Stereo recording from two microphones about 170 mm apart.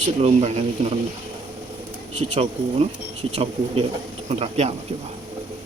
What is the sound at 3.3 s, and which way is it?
Speech, 35° right (ahead or behind).